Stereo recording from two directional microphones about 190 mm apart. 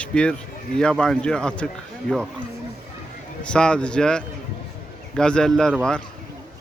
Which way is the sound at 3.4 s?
5° left (ahead or behind).